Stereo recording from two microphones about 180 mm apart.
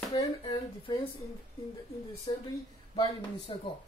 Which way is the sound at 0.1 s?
30° left (ahead or behind).